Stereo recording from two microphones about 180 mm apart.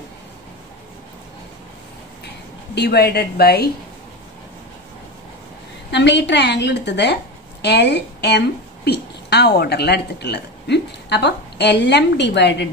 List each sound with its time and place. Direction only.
2.7 s a woman's voice: 65° left (ahead or behind)
5.9 s a woman's voice: 70° left (ahead or behind)